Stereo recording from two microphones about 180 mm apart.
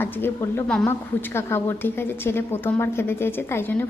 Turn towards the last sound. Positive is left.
turn(degrees=15)  # may be behind; listen again after turning